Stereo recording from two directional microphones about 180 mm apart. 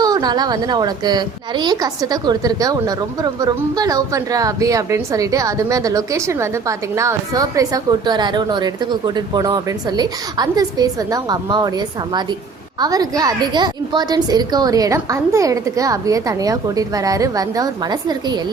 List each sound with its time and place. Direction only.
0.0 s a woman's voice: 20° right (ahead or behind)
12.8 s a woman's voice: 20° right (ahead or behind)